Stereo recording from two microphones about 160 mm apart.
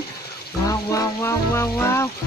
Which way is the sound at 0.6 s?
20° left (ahead or behind).